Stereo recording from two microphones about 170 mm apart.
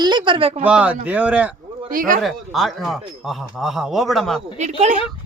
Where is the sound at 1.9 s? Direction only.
55° right (ahead or behind).